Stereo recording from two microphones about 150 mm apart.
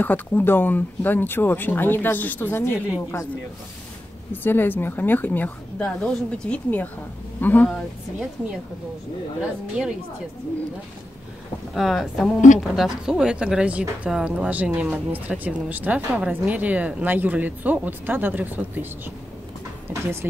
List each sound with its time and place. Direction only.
0.0 s speech: 10° left (ahead or behind)
4.3 s speech: 15° left (ahead or behind)
9.4 s speech: 5° right (ahead or behind)
11.7 s speech: centre (ahead or behind)
19.9 s speech: 15° right (ahead or behind)